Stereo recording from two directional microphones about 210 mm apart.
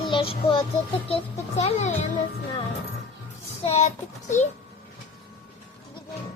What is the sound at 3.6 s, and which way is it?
Child singing, 30° left (ahead or behind).